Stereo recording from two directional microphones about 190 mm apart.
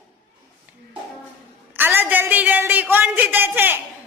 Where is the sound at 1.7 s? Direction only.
10° right (ahead or behind).